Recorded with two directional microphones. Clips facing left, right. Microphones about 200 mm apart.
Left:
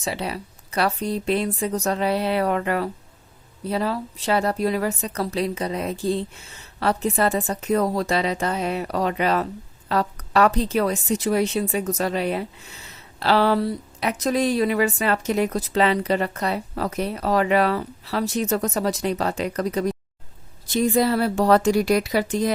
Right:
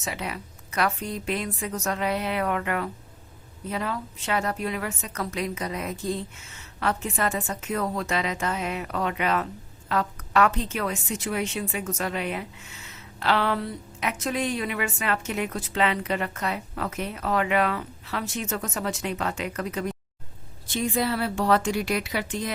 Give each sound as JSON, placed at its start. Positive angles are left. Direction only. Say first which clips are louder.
{"t": 0.0, "sound": "a woman's voice", "louder": "left 5 dB", "side_deg": 30}